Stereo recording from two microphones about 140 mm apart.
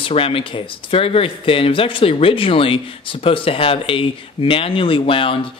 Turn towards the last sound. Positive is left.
turn(degrees=40)  # may be behind; listen again after turning